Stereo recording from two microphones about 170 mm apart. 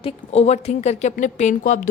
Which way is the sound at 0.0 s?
40° left (ahead or behind).